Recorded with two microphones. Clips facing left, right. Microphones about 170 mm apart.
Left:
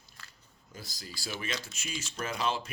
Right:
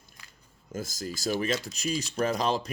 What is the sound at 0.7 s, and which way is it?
Speech, 45° right (ahead or behind).